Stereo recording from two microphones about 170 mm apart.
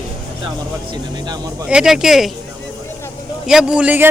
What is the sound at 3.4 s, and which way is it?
Speech, 5° right (ahead or behind).